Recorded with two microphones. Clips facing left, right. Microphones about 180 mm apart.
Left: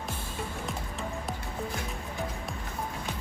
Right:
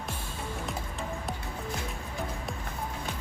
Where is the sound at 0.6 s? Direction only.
Centre (ahead or behind).